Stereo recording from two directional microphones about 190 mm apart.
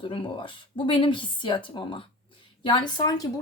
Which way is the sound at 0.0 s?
25° left (ahead or behind).